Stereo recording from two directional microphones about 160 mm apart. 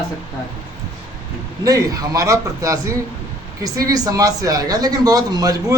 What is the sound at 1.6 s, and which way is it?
Speech, 20° right (ahead or behind).